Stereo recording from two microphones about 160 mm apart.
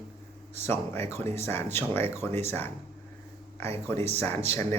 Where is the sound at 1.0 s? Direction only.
15° left (ahead or behind).